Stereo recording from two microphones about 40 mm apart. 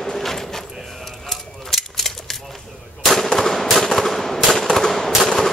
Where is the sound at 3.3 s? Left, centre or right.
Centre.